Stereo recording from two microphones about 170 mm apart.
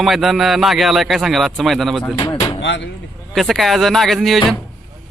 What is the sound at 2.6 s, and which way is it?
Speech, 90° left.